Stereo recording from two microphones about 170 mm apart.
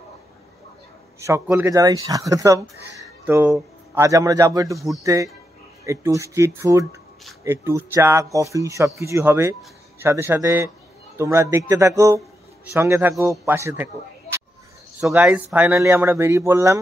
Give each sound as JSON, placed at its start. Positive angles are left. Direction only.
{"t": 1.2, "sound": "speech", "side_deg": -15}
{"t": 15.0, "sound": "speech", "side_deg": -10}